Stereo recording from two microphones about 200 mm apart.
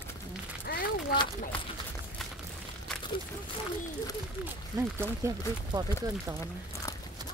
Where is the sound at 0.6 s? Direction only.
50° left (ahead or behind).